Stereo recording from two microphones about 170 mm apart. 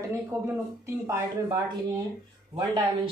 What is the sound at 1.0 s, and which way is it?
A woman's voice, 20° right (ahead or behind).